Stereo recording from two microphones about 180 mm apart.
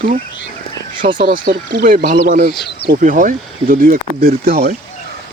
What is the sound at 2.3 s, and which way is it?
Speech, 55° right (ahead or behind).